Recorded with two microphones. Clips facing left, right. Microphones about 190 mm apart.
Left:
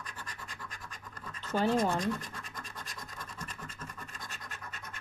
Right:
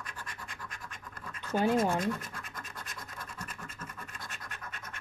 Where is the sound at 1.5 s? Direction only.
10° right (ahead or behind).